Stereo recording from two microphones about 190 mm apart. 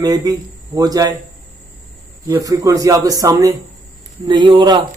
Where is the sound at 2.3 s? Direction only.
20° right (ahead or behind).